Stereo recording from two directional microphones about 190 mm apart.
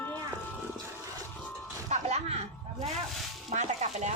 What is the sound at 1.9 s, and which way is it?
Music, 35° right (ahead or behind).